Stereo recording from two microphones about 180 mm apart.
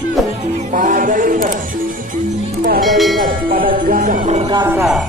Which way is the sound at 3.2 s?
50° right (ahead or behind).